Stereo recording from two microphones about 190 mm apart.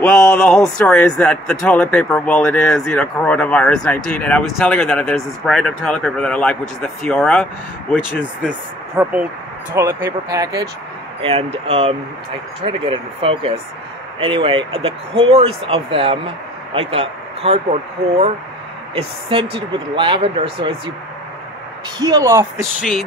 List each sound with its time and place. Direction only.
0.0 s a man's voice: 10° left (ahead or behind)
8.2 s speech: 5° right (ahead or behind)
10.0 s speech: 20° right (ahead or behind)
11.1 s speech: 30° right (ahead or behind)
22.0 s speech: 15° right (ahead or behind)